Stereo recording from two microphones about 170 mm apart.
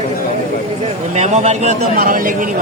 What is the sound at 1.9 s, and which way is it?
Speech, 55° right (ahead or behind).